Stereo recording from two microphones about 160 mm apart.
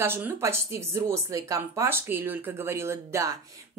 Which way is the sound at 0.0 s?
15° right (ahead or behind).